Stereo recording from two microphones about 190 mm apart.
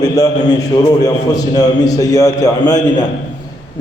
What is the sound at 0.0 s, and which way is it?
A man's voice, 20° left (ahead or behind).